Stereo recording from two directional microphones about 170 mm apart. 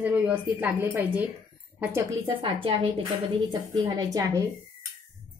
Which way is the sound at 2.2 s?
30° right (ahead or behind).